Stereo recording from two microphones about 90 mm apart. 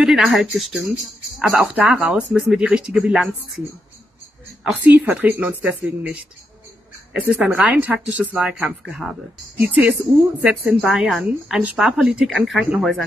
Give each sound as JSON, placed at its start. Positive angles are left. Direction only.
{"t": 0.0, "sound": "speech", "side_deg": -5}
{"t": 4.8, "sound": "speech", "side_deg": -15}
{"t": 7.3, "sound": "speech", "side_deg": -15}
{"t": 10.8, "sound": "speech", "side_deg": -5}